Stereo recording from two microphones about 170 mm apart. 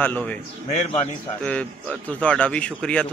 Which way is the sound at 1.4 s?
5° left (ahead or behind).